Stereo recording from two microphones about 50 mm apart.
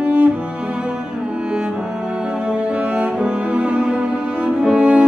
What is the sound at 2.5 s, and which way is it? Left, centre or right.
Music, right.